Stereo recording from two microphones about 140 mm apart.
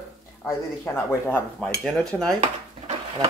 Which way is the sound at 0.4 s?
15° left (ahead or behind).